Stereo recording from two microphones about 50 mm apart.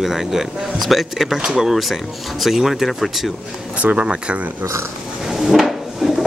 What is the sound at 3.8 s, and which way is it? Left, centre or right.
Speech, right.